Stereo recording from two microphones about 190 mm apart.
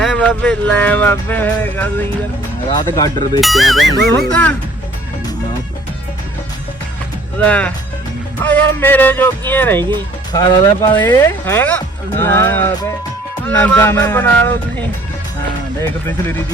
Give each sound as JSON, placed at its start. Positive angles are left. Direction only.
{"t": 0.0, "sound": "speech", "side_deg": 5}
{"t": 2.6, "sound": "speech", "side_deg": 20}
{"t": 3.4, "sound": "speech", "side_deg": 0}
{"t": 7.3, "sound": "speech", "side_deg": 10}
{"t": 10.3, "sound": "speech", "side_deg": 20}